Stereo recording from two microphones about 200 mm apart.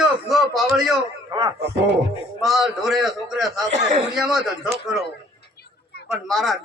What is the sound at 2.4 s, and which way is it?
A man's voice, centre (ahead or behind).